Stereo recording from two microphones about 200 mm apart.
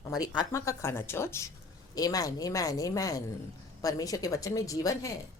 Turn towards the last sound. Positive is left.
turn(degrees=15)  # may be behind; listen again after turning